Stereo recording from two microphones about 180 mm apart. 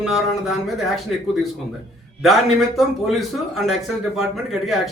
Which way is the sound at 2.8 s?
Centre (ahead or behind).